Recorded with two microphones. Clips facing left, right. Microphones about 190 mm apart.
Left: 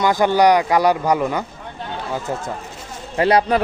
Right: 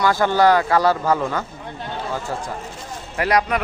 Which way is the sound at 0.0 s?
15° left (ahead or behind).